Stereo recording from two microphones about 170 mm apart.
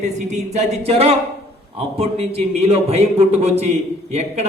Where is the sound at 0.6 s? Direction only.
35° right (ahead or behind).